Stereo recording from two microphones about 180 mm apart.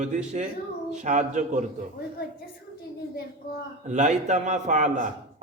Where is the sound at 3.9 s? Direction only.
40° right (ahead or behind).